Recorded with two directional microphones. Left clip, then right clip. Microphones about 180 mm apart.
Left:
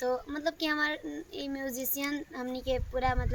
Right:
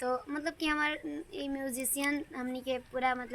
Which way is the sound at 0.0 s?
15° left (ahead or behind).